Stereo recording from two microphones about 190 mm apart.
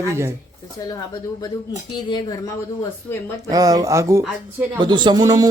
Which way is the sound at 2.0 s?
25° left (ahead or behind).